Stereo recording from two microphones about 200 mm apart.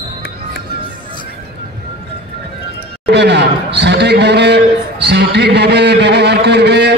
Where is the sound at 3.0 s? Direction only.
60° right (ahead or behind).